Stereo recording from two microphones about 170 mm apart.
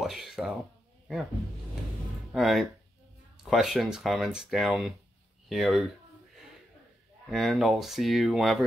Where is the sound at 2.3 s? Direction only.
Centre (ahead or behind).